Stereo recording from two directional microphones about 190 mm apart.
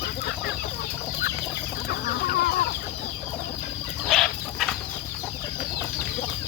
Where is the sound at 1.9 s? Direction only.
50° left (ahead or behind).